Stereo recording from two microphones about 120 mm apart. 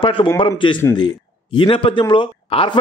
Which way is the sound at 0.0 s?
45° left (ahead or behind).